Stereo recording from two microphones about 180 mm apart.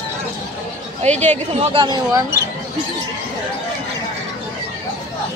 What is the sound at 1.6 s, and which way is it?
Speech, 25° right (ahead or behind).